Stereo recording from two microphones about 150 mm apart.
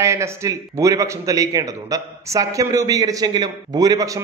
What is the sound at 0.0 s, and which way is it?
A man's voice, 20° right (ahead or behind).